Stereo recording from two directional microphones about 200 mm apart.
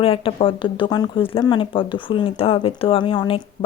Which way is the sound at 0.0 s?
30° left (ahead or behind).